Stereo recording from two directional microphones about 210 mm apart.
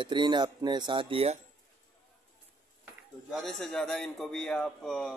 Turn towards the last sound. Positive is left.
turn(degrees=0)  # may be behind; listen again after turning